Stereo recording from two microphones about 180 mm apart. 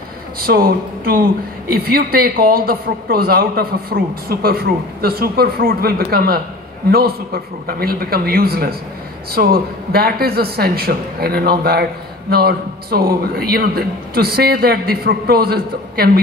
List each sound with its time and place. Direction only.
0.4 s a woman's voice: 55° right (ahead or behind)